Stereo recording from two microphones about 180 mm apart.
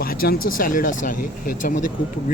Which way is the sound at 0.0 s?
55° left (ahead or behind).